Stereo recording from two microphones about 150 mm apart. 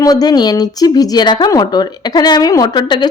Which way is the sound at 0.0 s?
25° left (ahead or behind).